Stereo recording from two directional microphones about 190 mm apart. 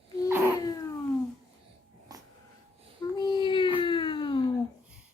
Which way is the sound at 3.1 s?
25° left (ahead or behind).